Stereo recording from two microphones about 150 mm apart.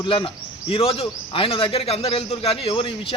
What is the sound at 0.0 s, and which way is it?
A man's voice, 35° left (ahead or behind).